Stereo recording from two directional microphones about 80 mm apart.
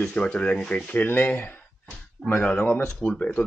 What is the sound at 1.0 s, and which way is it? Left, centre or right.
A man's voice, left.